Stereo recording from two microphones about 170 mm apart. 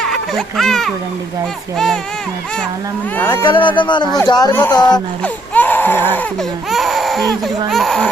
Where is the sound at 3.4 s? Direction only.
30° left (ahead or behind).